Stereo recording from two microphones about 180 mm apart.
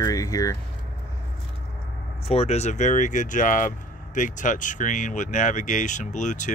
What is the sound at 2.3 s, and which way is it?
Speech, 35° left (ahead or behind).